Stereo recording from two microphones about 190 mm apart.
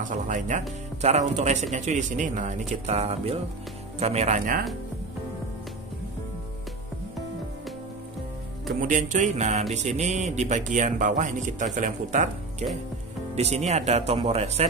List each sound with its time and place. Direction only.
0.0 s speech: 40° right (ahead or behind)
8.8 s speech: 40° right (ahead or behind)